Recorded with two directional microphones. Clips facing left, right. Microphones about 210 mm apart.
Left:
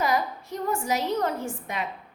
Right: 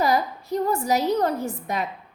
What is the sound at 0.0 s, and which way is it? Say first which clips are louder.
A woman's voice: right 3 dB; 35° right (ahead or behind).